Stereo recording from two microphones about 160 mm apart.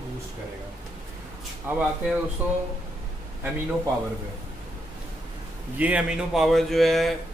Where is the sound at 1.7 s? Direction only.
10° right (ahead or behind).